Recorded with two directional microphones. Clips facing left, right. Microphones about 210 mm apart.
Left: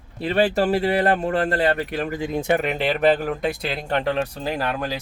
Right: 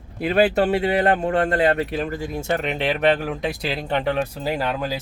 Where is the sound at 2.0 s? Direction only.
20° left (ahead or behind).